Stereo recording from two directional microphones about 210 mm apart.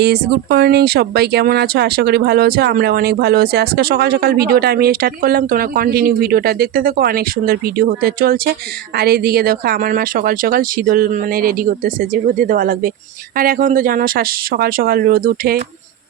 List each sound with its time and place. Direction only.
0.0 s speech: 50° right (ahead or behind)